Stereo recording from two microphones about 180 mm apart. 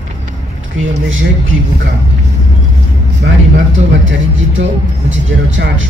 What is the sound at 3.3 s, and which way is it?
Speech, 80° right.